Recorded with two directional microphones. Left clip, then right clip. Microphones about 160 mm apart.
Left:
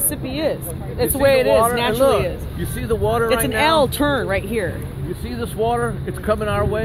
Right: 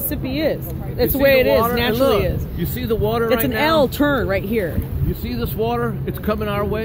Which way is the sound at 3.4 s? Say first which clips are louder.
Left 1 dB; 30° right (ahead or behind).